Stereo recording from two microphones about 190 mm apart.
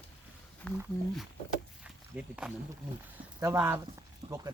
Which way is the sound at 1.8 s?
5° right (ahead or behind).